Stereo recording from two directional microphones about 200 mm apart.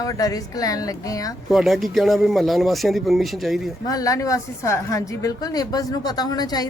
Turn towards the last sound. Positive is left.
turn(degrees=20)  # may be behind; listen again after turning